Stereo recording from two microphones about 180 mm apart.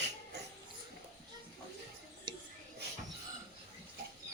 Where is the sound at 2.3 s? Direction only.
25° right (ahead or behind).